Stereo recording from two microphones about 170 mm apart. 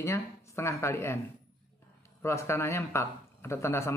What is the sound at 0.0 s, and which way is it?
Speech, 15° left (ahead or behind).